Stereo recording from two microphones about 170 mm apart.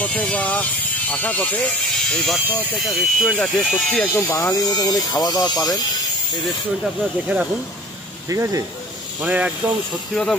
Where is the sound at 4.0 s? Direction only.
15° left (ahead or behind).